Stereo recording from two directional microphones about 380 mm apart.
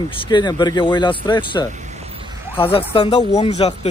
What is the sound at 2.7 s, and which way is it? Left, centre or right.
Speech, centre.